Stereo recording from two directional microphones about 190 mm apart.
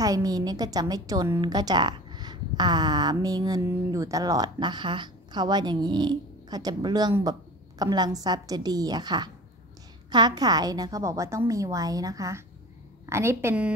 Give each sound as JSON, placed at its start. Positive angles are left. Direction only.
{"t": 0.0, "sound": "a woman's voice", "side_deg": -20}